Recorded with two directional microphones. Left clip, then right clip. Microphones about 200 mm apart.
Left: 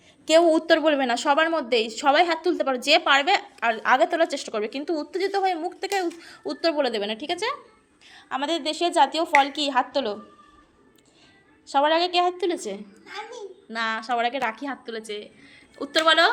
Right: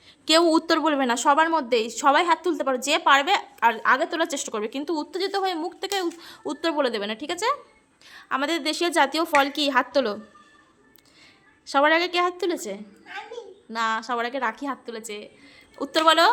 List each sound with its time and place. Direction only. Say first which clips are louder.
0.3 s a woman's voice: left 2 dB; 25° right (ahead or behind)
11.6 s a woman's voice: right 1 dB; 30° right (ahead or behind)
13.1 s a child's voice: even; centre (ahead or behind)
13.7 s a woman's voice: right 1 dB; 10° right (ahead or behind)